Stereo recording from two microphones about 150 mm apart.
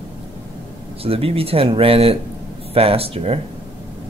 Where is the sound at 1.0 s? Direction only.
40° right (ahead or behind).